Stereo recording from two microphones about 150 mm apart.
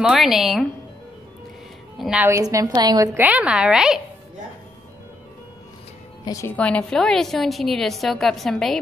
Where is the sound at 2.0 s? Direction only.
5° right (ahead or behind).